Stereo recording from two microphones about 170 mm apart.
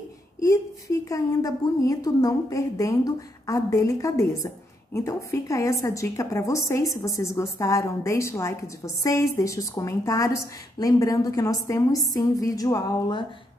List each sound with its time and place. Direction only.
0.4 s a woman's voice: 20° left (ahead or behind)